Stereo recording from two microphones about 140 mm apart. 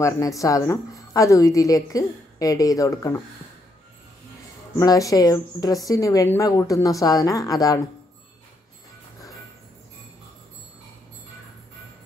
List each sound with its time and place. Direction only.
0.4 s a woman's voice: 25° left (ahead or behind)
4.7 s a woman's voice: 25° left (ahead or behind)